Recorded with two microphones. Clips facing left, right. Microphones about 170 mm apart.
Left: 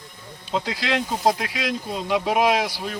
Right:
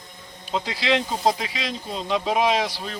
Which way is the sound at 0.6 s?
Centre (ahead or behind).